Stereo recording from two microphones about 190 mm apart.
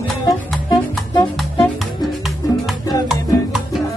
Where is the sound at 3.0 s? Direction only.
5° right (ahead or behind).